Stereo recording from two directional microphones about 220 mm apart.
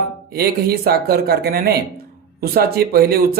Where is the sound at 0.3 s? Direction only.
45° right (ahead or behind).